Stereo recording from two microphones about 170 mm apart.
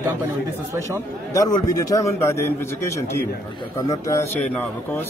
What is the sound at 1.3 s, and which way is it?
A man's voice, 20° left (ahead or behind).